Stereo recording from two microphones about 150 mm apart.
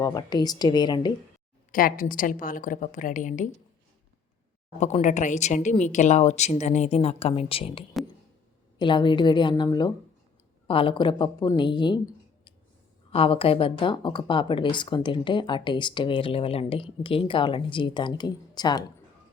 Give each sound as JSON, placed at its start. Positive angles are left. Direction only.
{"t": 0.0, "sound": "a woman's voice", "side_deg": 25}
{"t": 1.7, "sound": "a woman's voice", "side_deg": 65}
{"t": 4.8, "sound": "speech", "side_deg": 50}
{"t": 13.1, "sound": "speech", "side_deg": 40}